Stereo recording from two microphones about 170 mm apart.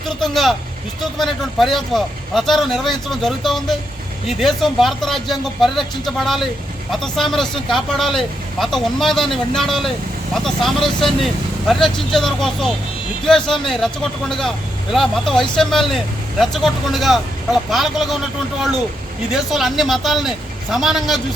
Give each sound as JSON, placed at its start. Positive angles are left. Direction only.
{"t": 0.2, "sound": "speech", "side_deg": 0}
{"t": 19.3, "sound": "speech", "side_deg": 0}